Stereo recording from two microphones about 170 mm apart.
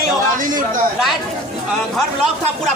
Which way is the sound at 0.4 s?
50° right (ahead or behind).